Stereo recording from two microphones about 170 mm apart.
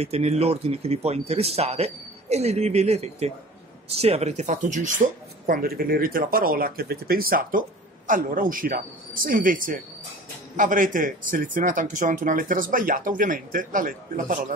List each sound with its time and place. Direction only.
0.0 s a man's voice: 40° right (ahead or behind)